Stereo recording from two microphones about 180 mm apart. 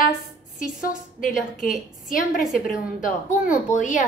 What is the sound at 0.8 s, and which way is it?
Speech, 50° left (ahead or behind).